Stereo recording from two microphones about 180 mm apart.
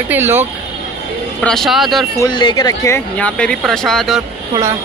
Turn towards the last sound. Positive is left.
turn(degrees=0)  # may be behind; listen again after turning